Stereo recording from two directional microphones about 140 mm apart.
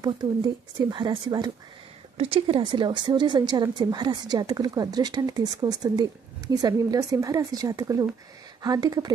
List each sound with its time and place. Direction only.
0.0 s speech: 30° right (ahead or behind)
2.1 s a woman's voice: 45° right (ahead or behind)